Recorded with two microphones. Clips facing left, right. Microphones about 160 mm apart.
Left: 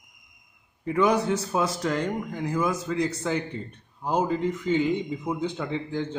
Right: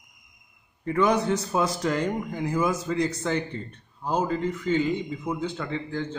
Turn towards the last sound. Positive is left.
turn(degrees=15)  # may be behind; listen again after turning